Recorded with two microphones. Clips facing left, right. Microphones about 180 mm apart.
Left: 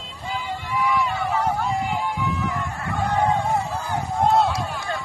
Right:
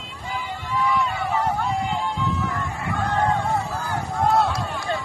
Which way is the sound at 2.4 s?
15° left (ahead or behind).